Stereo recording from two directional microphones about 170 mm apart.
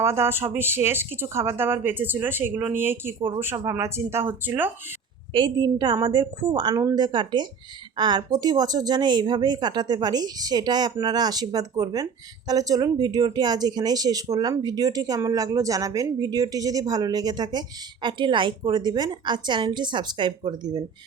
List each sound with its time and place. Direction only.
0.0 s speech: 15° right (ahead or behind)
3.2 s speech: 30° right (ahead or behind)
3.4 s speech: 15° right (ahead or behind)
5.3 s speech: 25° right (ahead or behind)